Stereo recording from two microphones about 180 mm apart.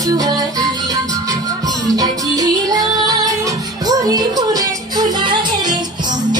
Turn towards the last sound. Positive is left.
turn(degrees=-25)  # may be behind; listen again after turning